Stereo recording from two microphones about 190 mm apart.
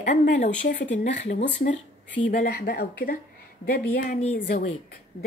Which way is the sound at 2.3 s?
50° left (ahead or behind).